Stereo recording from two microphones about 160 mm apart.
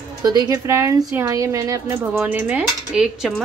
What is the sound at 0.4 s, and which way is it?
A woman's voice, 20° right (ahead or behind).